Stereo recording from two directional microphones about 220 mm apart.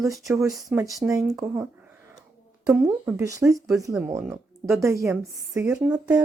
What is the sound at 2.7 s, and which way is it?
Speech, 5° right (ahead or behind).